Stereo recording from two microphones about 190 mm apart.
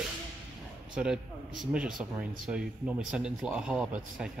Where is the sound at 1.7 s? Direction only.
5° right (ahead or behind).